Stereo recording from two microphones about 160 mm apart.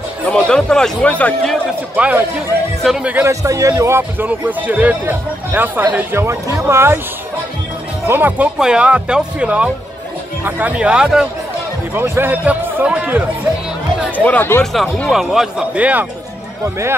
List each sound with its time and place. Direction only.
0.3 s speech: 5° left (ahead or behind)
2.0 s a man's voice: 10° right (ahead or behind)
8.1 s a man's voice: 10° right (ahead or behind)
14.2 s speech: 10° left (ahead or behind); by 16.1 s 10° right (ahead or behind)